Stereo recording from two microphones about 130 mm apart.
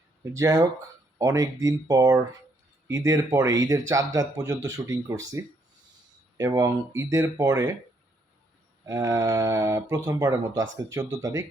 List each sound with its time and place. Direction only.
0.3 s speech: 25° right (ahead or behind)
8.9 s speech: 25° right (ahead or behind)